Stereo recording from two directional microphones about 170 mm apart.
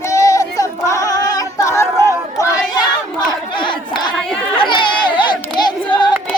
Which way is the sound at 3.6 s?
30° left (ahead or behind).